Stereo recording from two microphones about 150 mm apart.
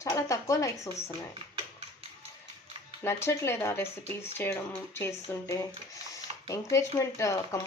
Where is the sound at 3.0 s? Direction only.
20° left (ahead or behind).